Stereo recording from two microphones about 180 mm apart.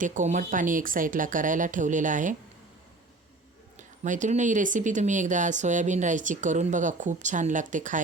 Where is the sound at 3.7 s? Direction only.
45° right (ahead or behind).